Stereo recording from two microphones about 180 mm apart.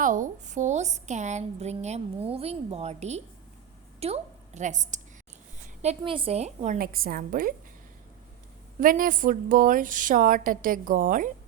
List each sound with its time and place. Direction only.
0.0 s a woman's voice: 45° right (ahead or behind)
5.8 s a woman's voice: 30° right (ahead or behind)
6.7 s a woman's voice: 55° right (ahead or behind)
8.8 s a woman's voice: 50° right (ahead or behind)